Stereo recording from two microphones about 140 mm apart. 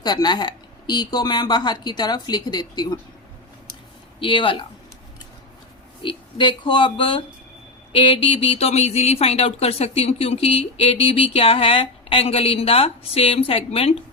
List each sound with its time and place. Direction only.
0.0 s speech: 30° left (ahead or behind)
4.2 s speech: 35° left (ahead or behind)
6.0 s speech: 35° left (ahead or behind)